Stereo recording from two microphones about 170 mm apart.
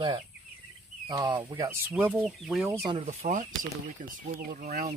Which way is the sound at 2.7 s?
30° right (ahead or behind).